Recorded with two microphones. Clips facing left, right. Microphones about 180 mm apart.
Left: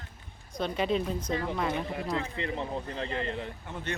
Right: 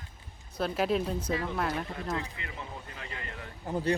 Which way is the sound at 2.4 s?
30° left (ahead or behind).